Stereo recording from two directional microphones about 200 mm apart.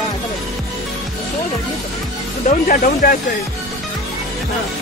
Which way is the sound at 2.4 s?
45° left (ahead or behind).